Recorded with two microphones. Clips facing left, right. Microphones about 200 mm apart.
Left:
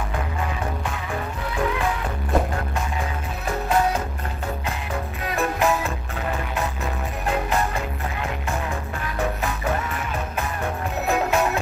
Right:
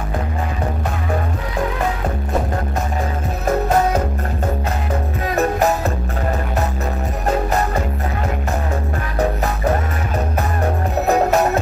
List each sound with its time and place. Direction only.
3.4 s music: 40° right (ahead or behind)
5.3 s music: 40° right (ahead or behind)
7.2 s music: 40° right (ahead or behind)
11.1 s music: 40° right (ahead or behind)